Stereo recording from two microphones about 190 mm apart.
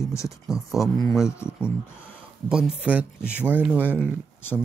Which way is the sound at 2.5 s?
5° right (ahead or behind).